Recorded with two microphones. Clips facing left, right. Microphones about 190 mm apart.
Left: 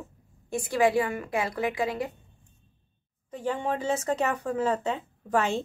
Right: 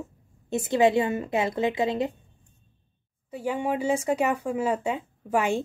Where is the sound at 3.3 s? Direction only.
10° right (ahead or behind).